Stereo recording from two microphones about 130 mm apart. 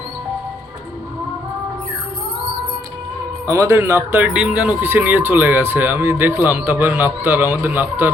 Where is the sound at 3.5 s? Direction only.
25° right (ahead or behind).